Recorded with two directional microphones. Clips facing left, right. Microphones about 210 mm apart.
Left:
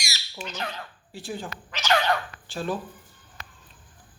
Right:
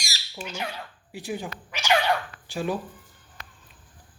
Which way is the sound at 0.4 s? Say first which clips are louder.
Even; 10° right (ahead or behind).